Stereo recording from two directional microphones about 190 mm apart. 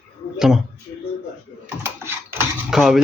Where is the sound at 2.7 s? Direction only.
Centre (ahead or behind).